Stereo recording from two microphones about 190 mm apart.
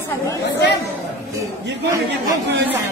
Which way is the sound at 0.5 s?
65° left (ahead or behind).